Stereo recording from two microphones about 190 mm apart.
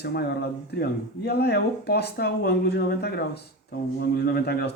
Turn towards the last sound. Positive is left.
turn(degrees=55)  # may be behind; listen again after turning